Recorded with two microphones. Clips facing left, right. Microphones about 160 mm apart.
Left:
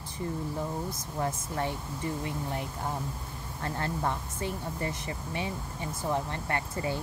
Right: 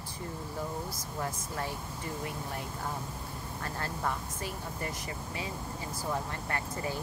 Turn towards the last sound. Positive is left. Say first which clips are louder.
# left 3 dB
turn(degrees=25)  # may be behind; listen again after turning